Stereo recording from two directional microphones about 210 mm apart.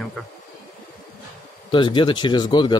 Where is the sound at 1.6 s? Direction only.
20° left (ahead or behind).